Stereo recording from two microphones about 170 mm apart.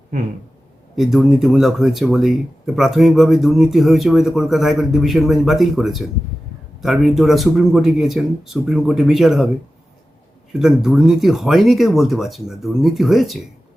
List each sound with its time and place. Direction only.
0.9 s speech: centre (ahead or behind)
10.6 s speech: centre (ahead or behind)